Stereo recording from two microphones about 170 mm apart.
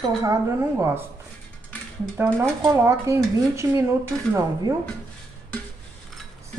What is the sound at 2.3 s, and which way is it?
Speech, 15° right (ahead or behind).